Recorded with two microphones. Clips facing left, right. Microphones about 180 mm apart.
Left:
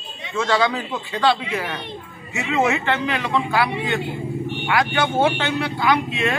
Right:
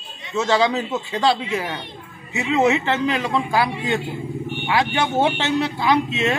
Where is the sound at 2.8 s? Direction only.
30° right (ahead or behind).